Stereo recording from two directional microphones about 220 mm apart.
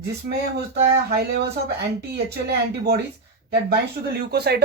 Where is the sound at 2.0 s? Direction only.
45° right (ahead or behind).